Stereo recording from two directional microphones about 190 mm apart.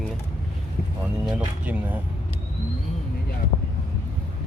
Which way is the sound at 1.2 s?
10° right (ahead or behind).